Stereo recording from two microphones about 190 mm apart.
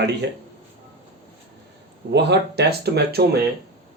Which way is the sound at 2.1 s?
60° right (ahead or behind).